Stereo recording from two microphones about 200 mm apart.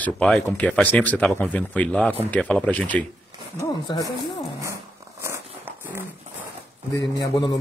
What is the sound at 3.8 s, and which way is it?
Speech, 20° left (ahead or behind).